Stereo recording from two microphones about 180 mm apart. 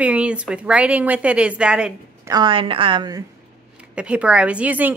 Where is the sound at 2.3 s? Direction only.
25° right (ahead or behind).